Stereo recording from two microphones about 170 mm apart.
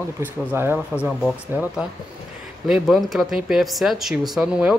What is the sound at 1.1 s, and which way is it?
Speech, centre (ahead or behind).